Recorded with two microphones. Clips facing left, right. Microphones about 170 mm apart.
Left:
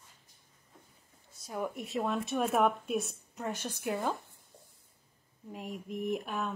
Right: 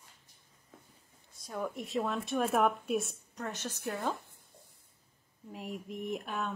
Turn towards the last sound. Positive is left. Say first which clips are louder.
# left 2 dB
turn(degrees=0)  # may be behind; listen again after turning